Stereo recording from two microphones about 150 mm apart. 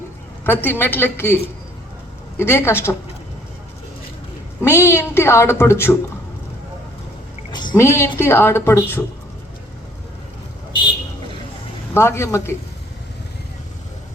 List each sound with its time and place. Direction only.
0.4 s speech: 15° left (ahead or behind)
2.4 s speech: 15° left (ahead or behind)
4.6 s speech: 15° left (ahead or behind)
7.5 s a sound: 30° left (ahead or behind)
7.8 s speech: 15° left (ahead or behind)
11.9 s speech: 15° left (ahead or behind)